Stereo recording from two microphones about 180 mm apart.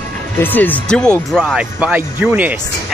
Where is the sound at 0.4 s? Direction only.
10° left (ahead or behind).